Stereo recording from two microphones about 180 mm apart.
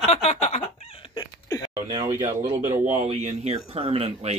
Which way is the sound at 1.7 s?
25° right (ahead or behind).